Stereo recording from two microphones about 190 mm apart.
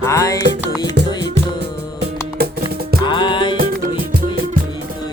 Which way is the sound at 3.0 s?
25° left (ahead or behind).